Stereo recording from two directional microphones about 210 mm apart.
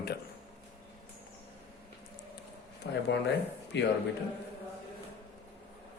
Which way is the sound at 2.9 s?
55° left (ahead or behind).